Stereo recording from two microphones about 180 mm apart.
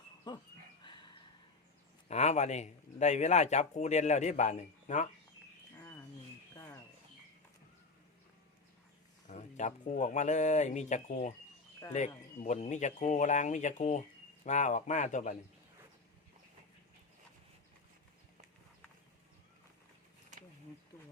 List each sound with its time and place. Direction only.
0.3 s dog: 25° left (ahead or behind)
0.9 s a sound: 25° left (ahead or behind)
2.0 s speech: 40° left (ahead or behind)
6.6 s bird: 15° left (ahead or behind)
9.3 s speech: 40° left (ahead or behind)